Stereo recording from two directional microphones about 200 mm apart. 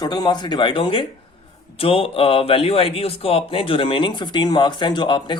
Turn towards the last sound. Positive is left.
turn(degrees=25)  # may be behind; listen again after turning